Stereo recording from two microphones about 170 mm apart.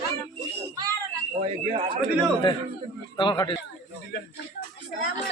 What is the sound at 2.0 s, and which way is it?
A man's voice, 30° left (ahead or behind).